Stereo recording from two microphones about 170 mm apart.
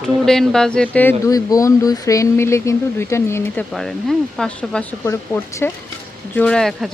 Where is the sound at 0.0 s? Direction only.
5° left (ahead or behind).